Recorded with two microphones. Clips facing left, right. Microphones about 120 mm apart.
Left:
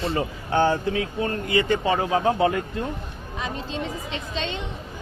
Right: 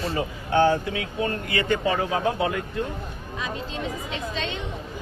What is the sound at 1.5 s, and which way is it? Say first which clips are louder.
Speech: left 4 dB; 25° left (ahead or behind).